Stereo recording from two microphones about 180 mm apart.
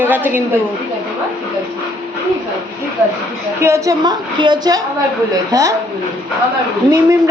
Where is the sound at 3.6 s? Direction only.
15° right (ahead or behind).